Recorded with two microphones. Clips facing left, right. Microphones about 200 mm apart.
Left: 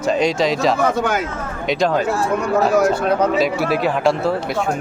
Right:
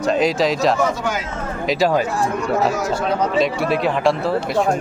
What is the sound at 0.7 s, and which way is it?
Speech, 55° left (ahead or behind).